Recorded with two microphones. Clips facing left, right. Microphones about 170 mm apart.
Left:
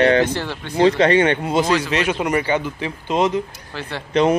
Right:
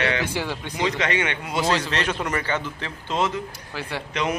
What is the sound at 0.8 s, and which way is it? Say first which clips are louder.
Speech: left 10 dB; 35° left (ahead or behind).